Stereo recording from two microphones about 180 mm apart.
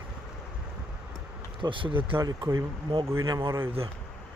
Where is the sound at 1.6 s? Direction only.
25° right (ahead or behind).